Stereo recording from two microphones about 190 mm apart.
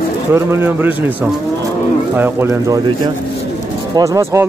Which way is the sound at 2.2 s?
15° right (ahead or behind).